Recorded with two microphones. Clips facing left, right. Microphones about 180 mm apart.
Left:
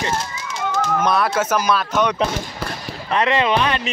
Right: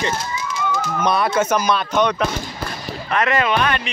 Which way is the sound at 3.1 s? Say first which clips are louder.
Left 1 dB; 30° left (ahead or behind).